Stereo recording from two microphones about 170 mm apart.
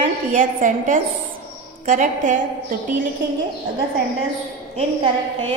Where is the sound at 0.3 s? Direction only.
50° right (ahead or behind).